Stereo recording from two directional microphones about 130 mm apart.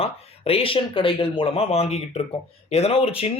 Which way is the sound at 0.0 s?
50° left (ahead or behind).